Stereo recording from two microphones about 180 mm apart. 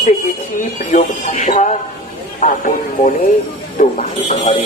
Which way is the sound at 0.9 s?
40° left (ahead or behind).